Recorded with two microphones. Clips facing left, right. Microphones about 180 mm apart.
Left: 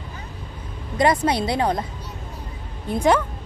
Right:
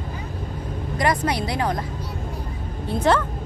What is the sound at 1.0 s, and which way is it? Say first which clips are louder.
Speech: left 4 dB; 25° left (ahead or behind).